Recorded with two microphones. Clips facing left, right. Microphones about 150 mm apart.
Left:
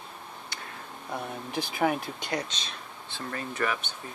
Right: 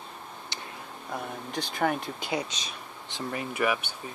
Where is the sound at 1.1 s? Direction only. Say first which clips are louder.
Left 1 dB; 5° left (ahead or behind).